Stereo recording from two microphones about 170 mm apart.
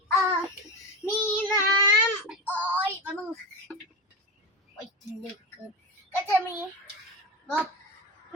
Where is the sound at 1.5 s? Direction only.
15° left (ahead or behind).